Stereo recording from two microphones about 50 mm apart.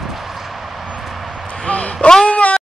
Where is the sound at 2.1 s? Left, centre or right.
Centre.